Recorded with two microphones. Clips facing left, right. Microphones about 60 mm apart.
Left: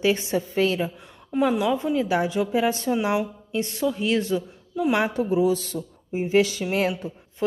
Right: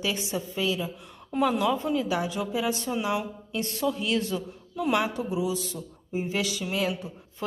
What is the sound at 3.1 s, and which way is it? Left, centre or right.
A woman's voice, left.